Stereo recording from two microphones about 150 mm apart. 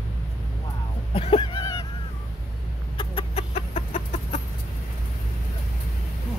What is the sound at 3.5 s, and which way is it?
Chicken, 45° left (ahead or behind).